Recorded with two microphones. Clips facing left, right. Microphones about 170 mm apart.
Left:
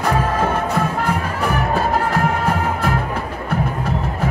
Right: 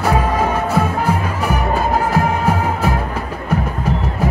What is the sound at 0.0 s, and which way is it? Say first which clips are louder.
Music: right 2 dB; 10° right (ahead or behind).